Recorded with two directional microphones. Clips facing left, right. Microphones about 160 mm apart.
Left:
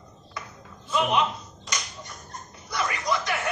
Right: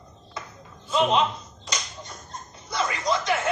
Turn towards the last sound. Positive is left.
turn(degrees=-25)  # may be behind; listen again after turning